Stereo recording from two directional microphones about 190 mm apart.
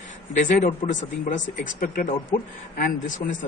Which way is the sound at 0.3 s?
40° left (ahead or behind).